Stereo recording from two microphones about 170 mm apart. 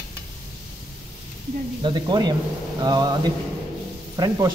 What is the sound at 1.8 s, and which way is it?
Speech, 25° right (ahead or behind).